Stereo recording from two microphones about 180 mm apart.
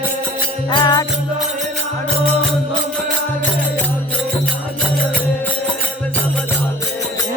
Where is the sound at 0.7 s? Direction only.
25° left (ahead or behind).